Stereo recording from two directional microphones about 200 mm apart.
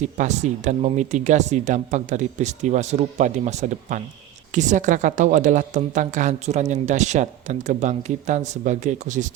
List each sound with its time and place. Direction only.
0.0 s speech: 35° right (ahead or behind)